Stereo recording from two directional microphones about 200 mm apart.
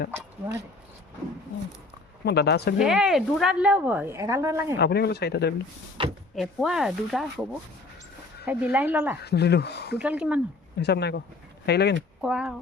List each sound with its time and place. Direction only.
0.1 s speech: 10° right (ahead or behind)
2.2 s speech: 55° left (ahead or behind)
2.7 s speech: 5° right (ahead or behind)
4.8 s speech: 55° left (ahead or behind)
6.0 s speech: 25° right (ahead or behind)
6.3 s speech: centre (ahead or behind)
8.4 s speech: 10° right (ahead or behind)
9.2 s speech: 55° left (ahead or behind)
10.0 s speech: 5° right (ahead or behind)
10.8 s speech: 55° left (ahead or behind)
12.2 s speech: 5° right (ahead or behind)